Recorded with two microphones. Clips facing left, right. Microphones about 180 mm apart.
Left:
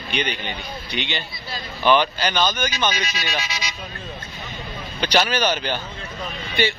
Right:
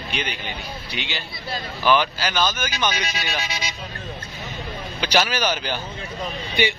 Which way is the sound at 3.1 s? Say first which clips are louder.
Even; 55° right (ahead or behind).